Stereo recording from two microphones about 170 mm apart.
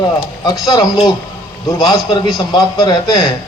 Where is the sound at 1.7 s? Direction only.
25° left (ahead or behind).